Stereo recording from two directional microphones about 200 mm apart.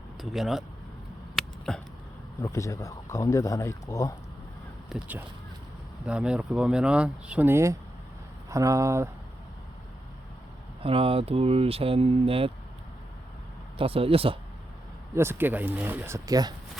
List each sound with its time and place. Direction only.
0.2 s speech: centre (ahead or behind)
1.4 s a sound: 5° left (ahead or behind)
2.4 s speech: 15° left (ahead or behind)
4.9 s speech: 5° right (ahead or behind)
10.8 s speech: 30° right (ahead or behind)
13.7 s speech: 30° right (ahead or behind)
15.1 s speech: 10° right (ahead or behind)